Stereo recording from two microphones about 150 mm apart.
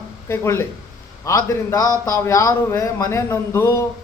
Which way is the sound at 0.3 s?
15° left (ahead or behind).